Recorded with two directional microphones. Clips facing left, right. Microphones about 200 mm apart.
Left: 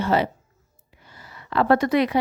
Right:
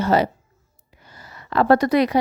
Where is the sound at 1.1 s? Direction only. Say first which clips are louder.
Right 2 dB; 40° right (ahead or behind).